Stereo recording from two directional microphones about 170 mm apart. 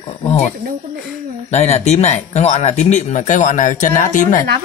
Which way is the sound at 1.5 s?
40° left (ahead or behind).